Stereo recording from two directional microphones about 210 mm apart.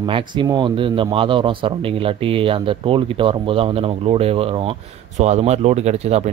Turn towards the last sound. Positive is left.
turn(degrees=-30)  # may be behind; listen again after turning